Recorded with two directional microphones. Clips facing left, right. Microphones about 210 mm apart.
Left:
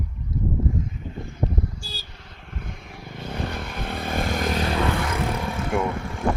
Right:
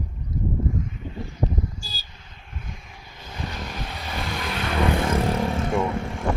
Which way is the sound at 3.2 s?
60° left (ahead or behind).